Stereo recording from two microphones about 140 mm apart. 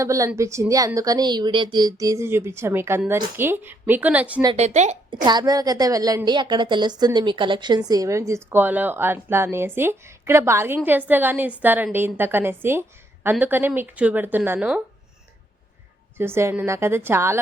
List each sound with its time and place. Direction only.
0.0 s a woman's voice: 20° right (ahead or behind)
4.5 s speech: 55° right (ahead or behind)
5.1 s a woman's voice: 30° right (ahead or behind); by 14.7 s 15° right (ahead or behind)
16.1 s a woman's voice: 15° right (ahead or behind)